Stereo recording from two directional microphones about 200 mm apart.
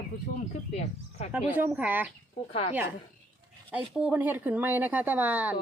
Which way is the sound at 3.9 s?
5° right (ahead or behind).